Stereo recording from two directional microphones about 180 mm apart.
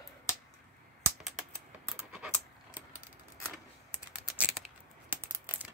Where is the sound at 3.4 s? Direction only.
10° right (ahead or behind).